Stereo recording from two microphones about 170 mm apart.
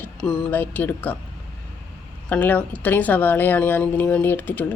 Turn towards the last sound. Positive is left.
turn(degrees=10)  # may be behind; listen again after turning